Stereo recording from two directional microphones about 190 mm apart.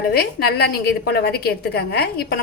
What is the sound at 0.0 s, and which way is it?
A woman's voice, 55° left (ahead or behind).